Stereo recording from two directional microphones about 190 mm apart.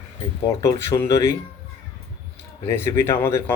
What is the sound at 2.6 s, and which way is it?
Speech, 15° left (ahead or behind).